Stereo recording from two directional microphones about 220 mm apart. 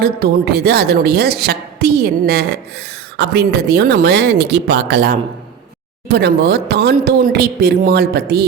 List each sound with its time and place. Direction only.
0.0 s speech: 45° right (ahead or behind)